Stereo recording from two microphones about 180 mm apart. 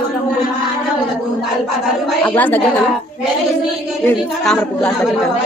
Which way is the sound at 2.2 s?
10° left (ahead or behind).